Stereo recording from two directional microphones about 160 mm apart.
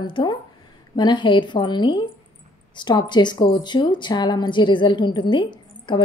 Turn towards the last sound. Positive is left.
turn(degrees=30)  # may be behind; listen again after turning